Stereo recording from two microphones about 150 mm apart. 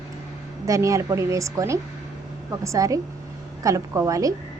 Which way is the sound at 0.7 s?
20° right (ahead or behind).